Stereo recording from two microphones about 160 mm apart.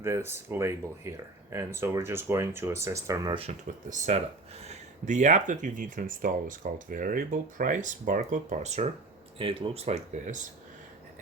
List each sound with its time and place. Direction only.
0.0 s speech: 15° right (ahead or behind)
3.8 s speech: 45° right (ahead or behind)
9.4 s speech: 35° right (ahead or behind)